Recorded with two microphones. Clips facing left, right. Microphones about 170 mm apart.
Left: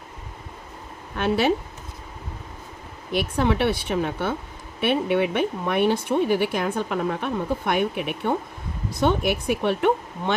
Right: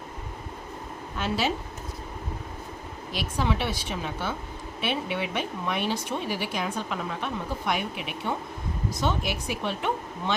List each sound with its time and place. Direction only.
1.1 s speech: 60° left (ahead or behind)
3.1 s speech: 55° left (ahead or behind)